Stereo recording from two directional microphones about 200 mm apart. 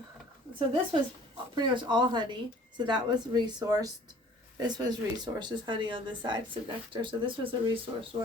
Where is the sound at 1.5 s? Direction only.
20° right (ahead or behind).